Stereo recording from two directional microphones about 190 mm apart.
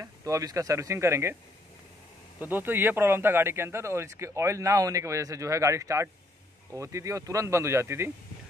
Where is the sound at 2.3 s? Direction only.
10° right (ahead or behind).